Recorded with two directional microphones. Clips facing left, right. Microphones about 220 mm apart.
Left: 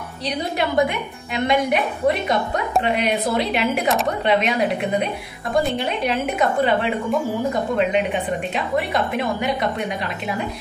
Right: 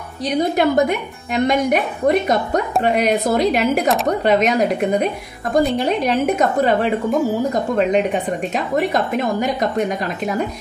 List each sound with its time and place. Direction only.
0.2 s a woman's voice: 45° right (ahead or behind)